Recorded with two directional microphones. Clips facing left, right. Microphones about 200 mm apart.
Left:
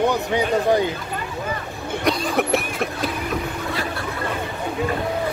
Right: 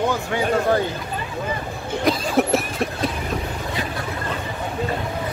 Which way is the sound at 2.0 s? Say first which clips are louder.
Right 2 dB; centre (ahead or behind).